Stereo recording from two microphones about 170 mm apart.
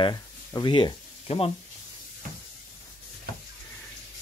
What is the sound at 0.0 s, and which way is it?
Speech, 25° left (ahead or behind).